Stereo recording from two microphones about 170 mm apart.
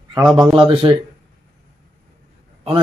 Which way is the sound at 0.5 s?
30° right (ahead or behind).